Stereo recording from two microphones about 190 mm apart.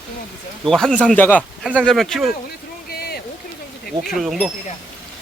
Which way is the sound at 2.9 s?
55° left (ahead or behind).